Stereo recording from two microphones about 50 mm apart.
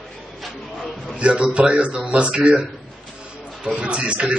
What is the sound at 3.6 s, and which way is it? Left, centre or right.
Speech, centre.